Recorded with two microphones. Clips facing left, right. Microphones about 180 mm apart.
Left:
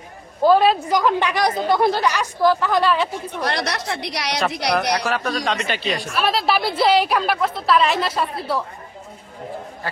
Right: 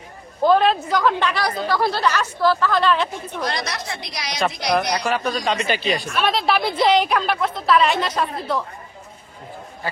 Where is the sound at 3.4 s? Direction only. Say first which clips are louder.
Left 3 dB; 70° left (ahead or behind).